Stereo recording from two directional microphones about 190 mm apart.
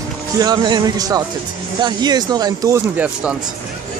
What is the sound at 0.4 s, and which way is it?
Speech, 20° right (ahead or behind).